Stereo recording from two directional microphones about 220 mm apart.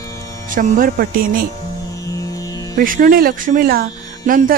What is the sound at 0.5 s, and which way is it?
Speech, 35° right (ahead or behind).